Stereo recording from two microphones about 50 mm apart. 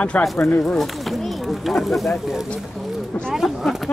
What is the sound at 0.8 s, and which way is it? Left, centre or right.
Speech, centre.